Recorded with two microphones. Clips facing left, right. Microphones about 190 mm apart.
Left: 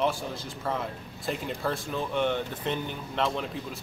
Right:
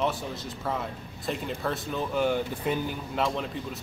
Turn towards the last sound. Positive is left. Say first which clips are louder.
# right 1 dB
turn(degrees=0)  # may be behind; listen again after turning